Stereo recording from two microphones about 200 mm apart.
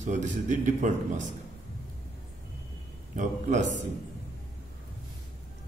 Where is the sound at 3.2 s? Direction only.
40° right (ahead or behind).